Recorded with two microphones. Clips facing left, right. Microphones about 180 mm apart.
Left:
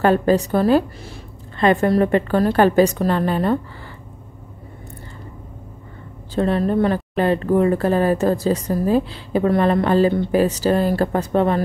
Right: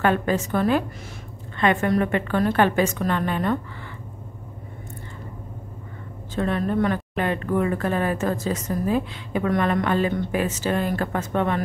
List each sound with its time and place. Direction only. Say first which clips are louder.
0.0 s a woman's voice: left 6 dB; 35° left (ahead or behind)
6.3 s a woman's voice: left 5 dB; 30° left (ahead or behind)